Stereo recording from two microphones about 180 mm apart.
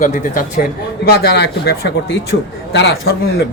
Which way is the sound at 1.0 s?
60° left (ahead or behind).